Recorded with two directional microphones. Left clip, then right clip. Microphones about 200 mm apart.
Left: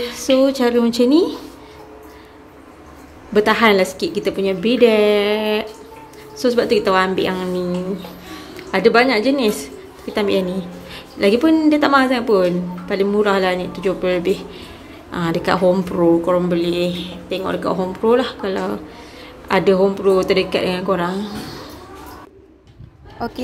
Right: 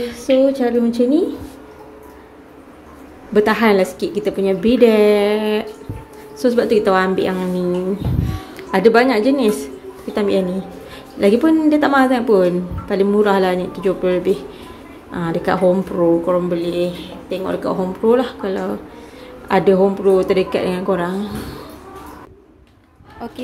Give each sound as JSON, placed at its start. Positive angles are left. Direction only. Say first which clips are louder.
{"t": 0.0, "sound": "a woman's voice", "louder": "right 1 dB", "side_deg": 0}
{"t": 3.3, "sound": "a woman's voice", "louder": "even", "side_deg": -5}
{"t": 8.7, "sound": "a woman's voice", "louder": "right 1 dB", "side_deg": -10}
{"t": 23.2, "sound": "speech", "louder": "left 5 dB", "side_deg": 20}